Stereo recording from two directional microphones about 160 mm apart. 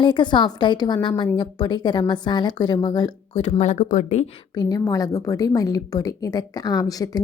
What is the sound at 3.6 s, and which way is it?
Speech, 50° left (ahead or behind).